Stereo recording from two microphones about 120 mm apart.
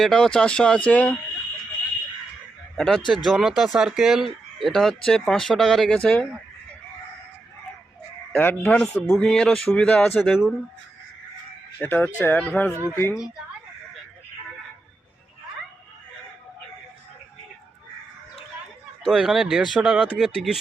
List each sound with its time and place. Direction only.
0.0 s speech: 5° left (ahead or behind)
2.7 s speech: 5° left (ahead or behind)
8.3 s speech: 15° left (ahead or behind); by 10.5 s centre (ahead or behind)
11.8 s speech: 15° left (ahead or behind)
19.0 s speech: centre (ahead or behind)